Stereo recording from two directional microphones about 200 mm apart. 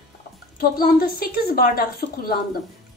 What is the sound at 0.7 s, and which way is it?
A woman's voice, 45° left (ahead or behind).